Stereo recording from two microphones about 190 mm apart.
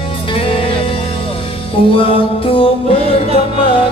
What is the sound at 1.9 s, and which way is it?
Music, 30° left (ahead or behind).